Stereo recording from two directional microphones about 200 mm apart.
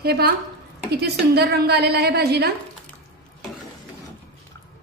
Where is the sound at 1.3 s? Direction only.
55° right (ahead or behind).